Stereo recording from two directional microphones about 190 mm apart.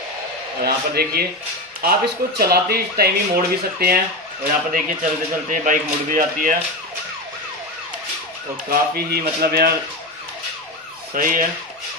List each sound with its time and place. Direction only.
0.6 s speech: 55° right (ahead or behind)
8.6 s speech: 55° right (ahead or behind)
11.1 s speech: 45° right (ahead or behind)